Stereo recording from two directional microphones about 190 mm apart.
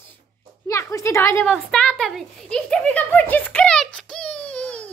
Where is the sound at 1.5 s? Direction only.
Centre (ahead or behind).